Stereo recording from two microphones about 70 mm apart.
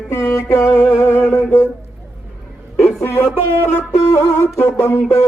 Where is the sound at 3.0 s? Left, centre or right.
Left.